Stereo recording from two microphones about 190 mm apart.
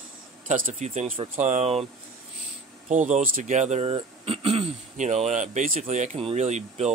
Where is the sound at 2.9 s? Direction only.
40° right (ahead or behind).